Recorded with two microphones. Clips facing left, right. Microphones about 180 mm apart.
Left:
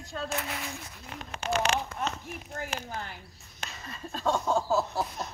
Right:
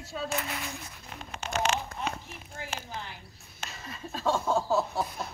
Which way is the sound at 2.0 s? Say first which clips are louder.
Left 2 dB; 55° left (ahead or behind).